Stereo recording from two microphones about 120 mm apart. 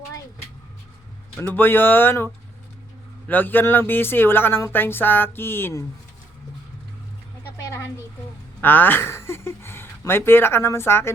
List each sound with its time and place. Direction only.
1.4 s speech: 15° left (ahead or behind)
8.6 s speech: 15° left (ahead or behind)